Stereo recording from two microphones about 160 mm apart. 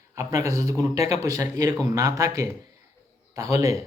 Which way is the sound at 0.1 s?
20° right (ahead or behind).